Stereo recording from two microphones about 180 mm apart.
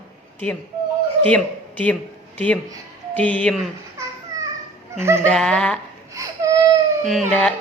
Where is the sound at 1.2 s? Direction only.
5° left (ahead or behind).